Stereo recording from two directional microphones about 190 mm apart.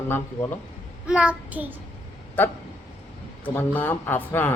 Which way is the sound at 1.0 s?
5° right (ahead or behind).